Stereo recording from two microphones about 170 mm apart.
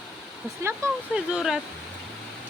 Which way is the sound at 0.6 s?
15° right (ahead or behind).